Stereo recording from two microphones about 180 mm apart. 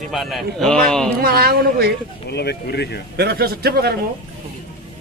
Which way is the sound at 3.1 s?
60° right (ahead or behind).